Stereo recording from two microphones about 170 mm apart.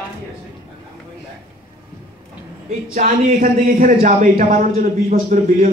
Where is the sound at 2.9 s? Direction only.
50° right (ahead or behind).